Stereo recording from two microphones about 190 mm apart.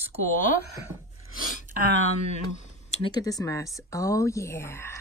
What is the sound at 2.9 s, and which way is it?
Speech, 25° left (ahead or behind).